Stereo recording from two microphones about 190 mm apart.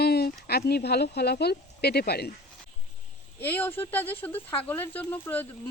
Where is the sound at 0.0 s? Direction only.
55° left (ahead or behind).